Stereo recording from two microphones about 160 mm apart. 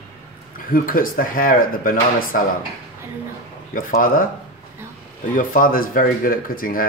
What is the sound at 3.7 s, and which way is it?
Speech, 60° left (ahead or behind).